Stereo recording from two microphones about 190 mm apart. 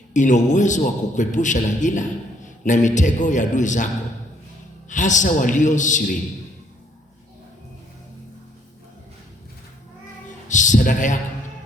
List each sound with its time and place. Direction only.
0.1 s a man's voice: 40° left (ahead or behind)
4.9 s a man's voice: 40° left (ahead or behind)
10.2 s a sound: 40° left (ahead or behind)